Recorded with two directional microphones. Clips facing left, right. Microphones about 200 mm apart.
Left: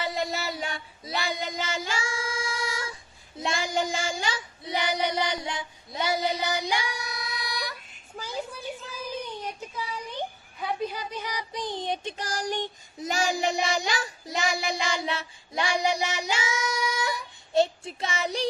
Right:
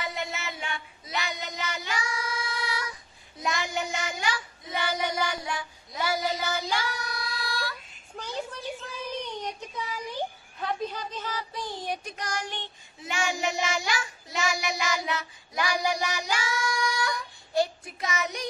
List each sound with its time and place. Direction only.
0.0 s child singing: 35° left (ahead or behind); by 6.6 s 20° left (ahead or behind)
7.3 s emergency vehicle: 20° left (ahead or behind)
8.2 s a sound: 5° left (ahead or behind)
10.6 s child singing: 10° left (ahead or behind); by 18.5 s 30° left (ahead or behind)